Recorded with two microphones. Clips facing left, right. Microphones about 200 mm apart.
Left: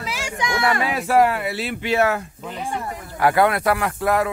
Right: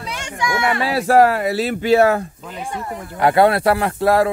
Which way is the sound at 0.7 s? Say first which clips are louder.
Right 5 dB; 35° right (ahead or behind).